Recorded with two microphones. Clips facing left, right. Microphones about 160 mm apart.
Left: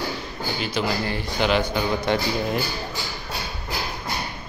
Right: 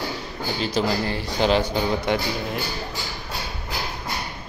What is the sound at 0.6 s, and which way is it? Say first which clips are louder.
Speech: right 3 dB; 35° right (ahead or behind).